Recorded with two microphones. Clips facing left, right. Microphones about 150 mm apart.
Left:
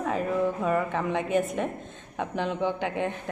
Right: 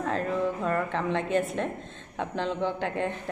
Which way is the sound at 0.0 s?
10° left (ahead or behind).